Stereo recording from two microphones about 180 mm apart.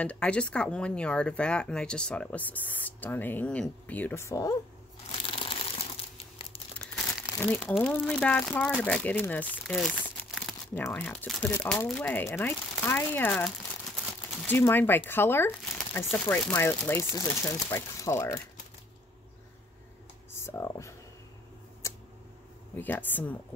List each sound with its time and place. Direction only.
0.0 s speech: 5° left (ahead or behind)
5.2 s crumpling: 30° left (ahead or behind)
7.3 s speech: 10° left (ahead or behind)
14.4 s speech: 10° left (ahead or behind)
20.3 s a sound: 15° left (ahead or behind)
21.8 s tick: 15° left (ahead or behind)
22.8 s speech: 10° left (ahead or behind)